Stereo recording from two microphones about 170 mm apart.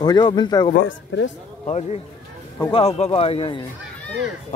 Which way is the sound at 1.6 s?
35° left (ahead or behind).